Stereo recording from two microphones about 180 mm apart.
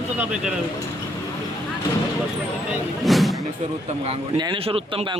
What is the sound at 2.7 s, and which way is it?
Speech, centre (ahead or behind).